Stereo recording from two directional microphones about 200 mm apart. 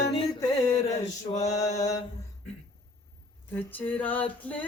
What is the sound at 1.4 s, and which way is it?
Mantra, 15° left (ahead or behind).